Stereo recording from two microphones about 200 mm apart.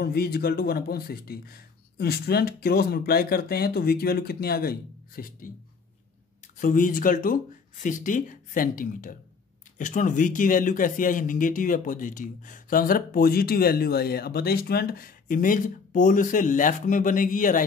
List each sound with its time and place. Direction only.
0.0 s speech: 50° left (ahead or behind)
6.6 s speech: 45° left (ahead or behind)